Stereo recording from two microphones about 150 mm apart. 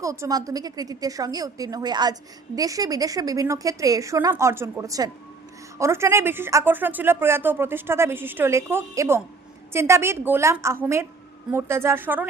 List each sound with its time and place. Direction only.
0.0 s a woman's voice: 20° right (ahead or behind)